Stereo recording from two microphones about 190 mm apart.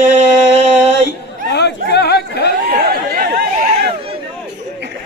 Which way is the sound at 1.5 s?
60° left (ahead or behind).